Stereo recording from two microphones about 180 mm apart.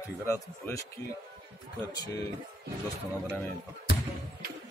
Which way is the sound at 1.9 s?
20° left (ahead or behind).